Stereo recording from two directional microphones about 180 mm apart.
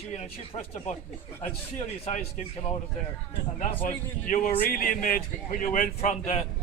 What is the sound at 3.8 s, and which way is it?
Speech, 45° left (ahead or behind).